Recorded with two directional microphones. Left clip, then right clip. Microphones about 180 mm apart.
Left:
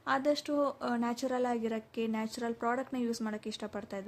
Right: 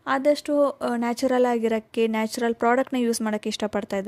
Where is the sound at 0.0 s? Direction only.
40° right (ahead or behind).